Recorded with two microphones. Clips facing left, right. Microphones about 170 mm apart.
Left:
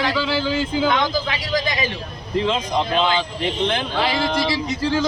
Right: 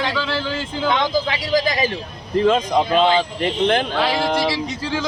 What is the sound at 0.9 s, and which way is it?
Speech, 30° right (ahead or behind).